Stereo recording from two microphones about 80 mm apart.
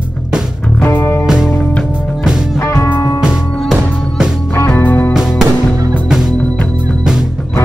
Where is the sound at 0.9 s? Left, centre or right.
Left.